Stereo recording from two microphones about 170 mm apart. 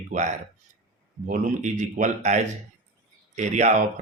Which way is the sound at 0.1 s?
45° right (ahead or behind).